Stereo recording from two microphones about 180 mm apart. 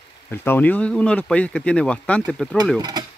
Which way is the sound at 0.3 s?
10° left (ahead or behind).